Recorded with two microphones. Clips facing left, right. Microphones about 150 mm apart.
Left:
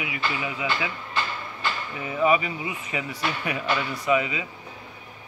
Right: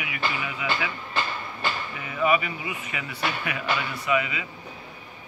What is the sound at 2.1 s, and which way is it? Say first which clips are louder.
A man's voice: left 2 dB; 25° left (ahead or behind).